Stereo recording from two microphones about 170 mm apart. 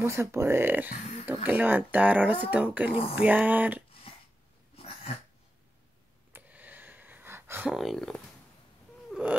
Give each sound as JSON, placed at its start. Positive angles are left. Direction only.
{"t": 0.0, "sound": "speech", "side_deg": -15}
{"t": 2.9, "sound": "speech", "side_deg": 35}
{"t": 3.2, "sound": "speech", "side_deg": -10}
{"t": 4.7, "sound": "throat clearing", "side_deg": 35}
{"t": 6.3, "sound": "a sound", "side_deg": -10}
{"t": 7.7, "sound": "speech", "side_deg": 0}
{"t": 9.1, "sound": "a sound", "side_deg": -10}